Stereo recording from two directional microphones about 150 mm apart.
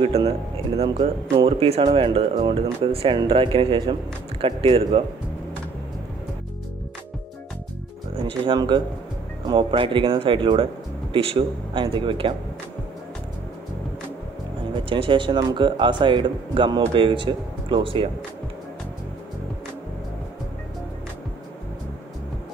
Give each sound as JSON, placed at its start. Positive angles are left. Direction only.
{"t": 0.1, "sound": "speech", "side_deg": -45}
{"t": 8.5, "sound": "speech", "side_deg": -30}
{"t": 14.9, "sound": "speech", "side_deg": -35}